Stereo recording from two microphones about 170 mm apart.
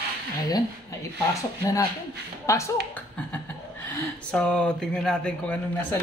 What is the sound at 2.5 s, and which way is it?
Speech, 15° left (ahead or behind).